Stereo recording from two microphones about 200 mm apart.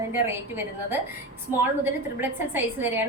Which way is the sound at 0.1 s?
10° right (ahead or behind).